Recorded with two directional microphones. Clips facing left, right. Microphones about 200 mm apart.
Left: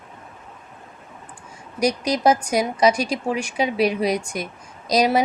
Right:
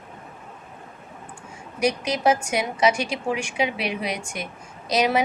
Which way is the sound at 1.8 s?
40° left (ahead or behind).